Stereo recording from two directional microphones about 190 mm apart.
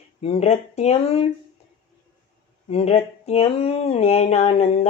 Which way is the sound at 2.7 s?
30° left (ahead or behind).